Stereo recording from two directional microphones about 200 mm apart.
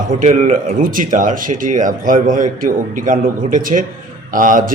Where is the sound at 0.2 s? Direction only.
35° right (ahead or behind).